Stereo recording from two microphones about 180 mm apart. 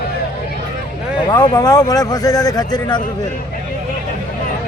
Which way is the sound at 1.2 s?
25° left (ahead or behind).